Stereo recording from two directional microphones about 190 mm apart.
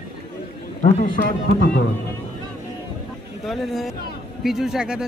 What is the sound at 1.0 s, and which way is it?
Speech, 50° left (ahead or behind).